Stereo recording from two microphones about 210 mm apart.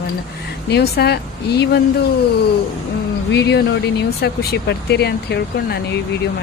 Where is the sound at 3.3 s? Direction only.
55° left (ahead or behind).